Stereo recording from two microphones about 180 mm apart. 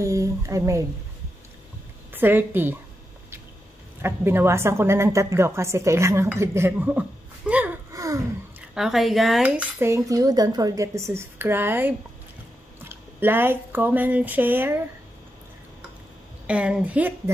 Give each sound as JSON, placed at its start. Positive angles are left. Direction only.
{"t": 0.0, "sound": "a woman's voice", "side_deg": -15}
{"t": 2.1, "sound": "a woman's voice", "side_deg": -10}
{"t": 4.0, "sound": "a woman's voice", "side_deg": -10}
{"t": 7.9, "sound": "gasp", "side_deg": -20}
{"t": 8.7, "sound": "a woman's voice", "side_deg": 0}
{"t": 16.4, "sound": "a woman's voice", "side_deg": -5}